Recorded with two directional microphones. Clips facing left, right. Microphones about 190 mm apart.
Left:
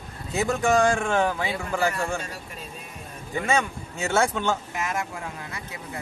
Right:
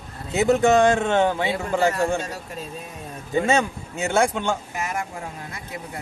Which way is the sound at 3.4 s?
25° right (ahead or behind).